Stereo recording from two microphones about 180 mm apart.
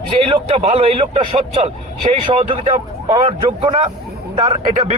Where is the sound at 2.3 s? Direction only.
30° right (ahead or behind).